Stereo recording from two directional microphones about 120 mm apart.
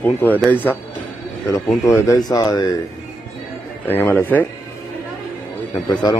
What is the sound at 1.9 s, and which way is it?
Speech, 30° left (ahead or behind).